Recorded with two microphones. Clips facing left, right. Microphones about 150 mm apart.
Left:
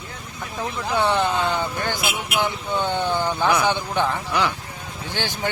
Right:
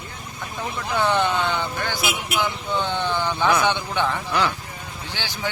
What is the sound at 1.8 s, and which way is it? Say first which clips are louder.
Speech: left 1 dB; 50° left (ahead or behind).